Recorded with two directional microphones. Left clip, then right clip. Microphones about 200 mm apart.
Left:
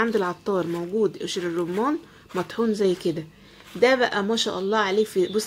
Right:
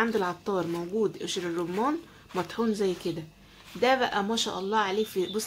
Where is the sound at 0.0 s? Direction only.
20° left (ahead or behind).